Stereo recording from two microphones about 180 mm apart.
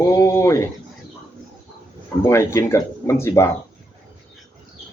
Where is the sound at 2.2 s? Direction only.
15° left (ahead or behind).